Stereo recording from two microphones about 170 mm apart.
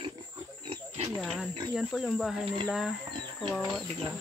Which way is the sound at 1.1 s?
Centre (ahead or behind).